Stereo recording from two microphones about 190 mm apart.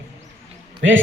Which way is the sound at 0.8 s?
85° right.